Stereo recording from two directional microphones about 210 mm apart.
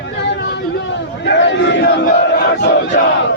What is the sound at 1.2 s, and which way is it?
Battle cry, 55° left (ahead or behind).